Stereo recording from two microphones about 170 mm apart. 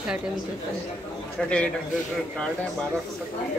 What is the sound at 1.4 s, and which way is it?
Speech, 5° left (ahead or behind).